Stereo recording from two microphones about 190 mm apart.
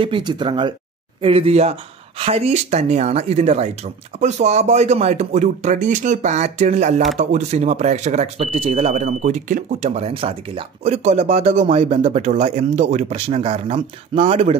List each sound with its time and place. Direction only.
0.0 s speech: 25° right (ahead or behind)